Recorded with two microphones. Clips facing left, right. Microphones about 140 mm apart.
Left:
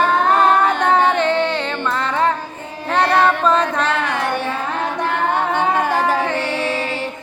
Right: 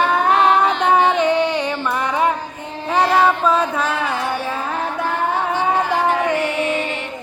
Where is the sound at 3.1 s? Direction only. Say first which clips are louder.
Left 1 dB; 10° right (ahead or behind).